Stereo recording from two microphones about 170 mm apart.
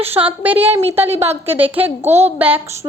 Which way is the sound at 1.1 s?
35° right (ahead or behind).